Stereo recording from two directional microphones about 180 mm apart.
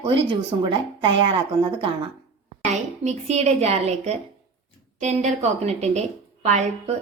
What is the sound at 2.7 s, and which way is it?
A woman's voice, 35° right (ahead or behind).